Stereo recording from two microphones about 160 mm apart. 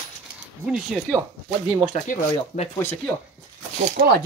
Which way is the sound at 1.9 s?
45° left (ahead or behind).